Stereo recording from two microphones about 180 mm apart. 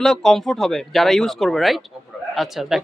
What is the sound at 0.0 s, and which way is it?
Speech, 5° left (ahead or behind).